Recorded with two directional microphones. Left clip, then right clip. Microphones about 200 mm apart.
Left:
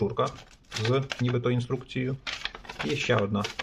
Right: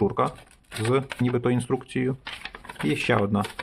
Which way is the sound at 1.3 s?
30° right (ahead or behind).